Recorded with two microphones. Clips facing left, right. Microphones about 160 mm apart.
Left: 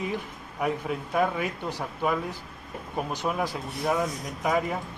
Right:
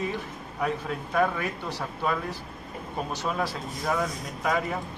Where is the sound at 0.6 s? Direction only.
15° left (ahead or behind).